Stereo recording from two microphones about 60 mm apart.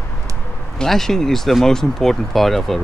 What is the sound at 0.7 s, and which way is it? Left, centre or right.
Speech, centre.